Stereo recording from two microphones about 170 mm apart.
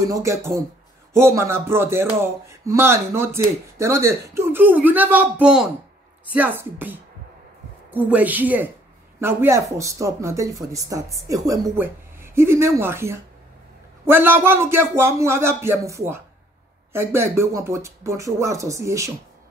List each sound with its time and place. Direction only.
0.1 s speech: 15° right (ahead or behind)